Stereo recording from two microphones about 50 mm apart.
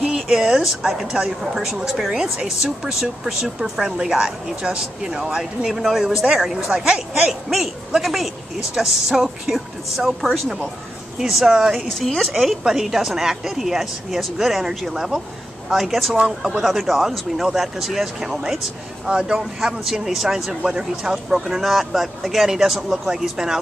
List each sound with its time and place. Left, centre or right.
0.3 s a woman's voice: centre
16.2 s speech: centre
16.5 s a woman's voice: centre